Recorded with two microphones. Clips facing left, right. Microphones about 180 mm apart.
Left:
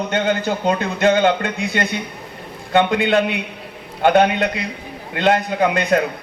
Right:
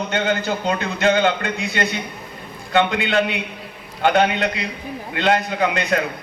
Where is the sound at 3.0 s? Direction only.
50° left (ahead or behind).